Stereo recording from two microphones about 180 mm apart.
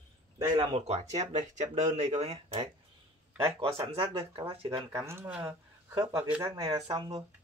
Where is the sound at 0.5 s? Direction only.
30° right (ahead or behind).